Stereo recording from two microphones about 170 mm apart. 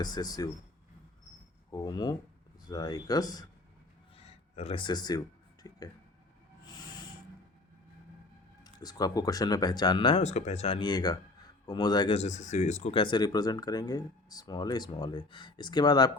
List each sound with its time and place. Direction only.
0.0 s speech: 25° left (ahead or behind)
1.7 s speech: 25° left (ahead or behind)
4.2 s speech: 35° left (ahead or behind)
8.6 s speech: 25° left (ahead or behind)
10.2 s speech: 40° left (ahead or behind); by 12.1 s 25° left (ahead or behind)
12.1 s speech: 40° left (ahead or behind); by 16.1 s 25° left (ahead or behind)